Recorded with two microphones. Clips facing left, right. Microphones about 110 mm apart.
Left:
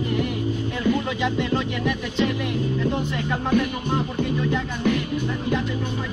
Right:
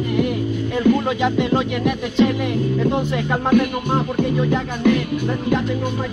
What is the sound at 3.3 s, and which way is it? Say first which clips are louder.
Speech: right 5 dB; 55° right (ahead or behind).